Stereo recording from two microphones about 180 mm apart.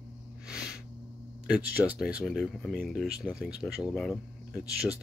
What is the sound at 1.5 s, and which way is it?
Speech, 5° right (ahead or behind).